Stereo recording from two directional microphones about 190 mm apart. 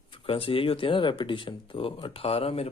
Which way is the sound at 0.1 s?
30° left (ahead or behind).